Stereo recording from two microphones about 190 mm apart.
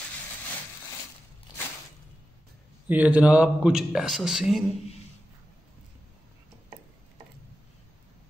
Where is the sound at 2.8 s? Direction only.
10° right (ahead or behind).